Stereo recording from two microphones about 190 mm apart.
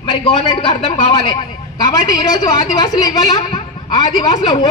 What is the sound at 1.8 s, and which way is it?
A woman's voice, 20° left (ahead or behind).